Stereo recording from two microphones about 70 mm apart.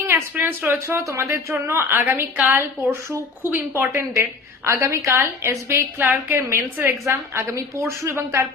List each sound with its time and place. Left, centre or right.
0.3 s speech: right
1.0 s a woman's voice: right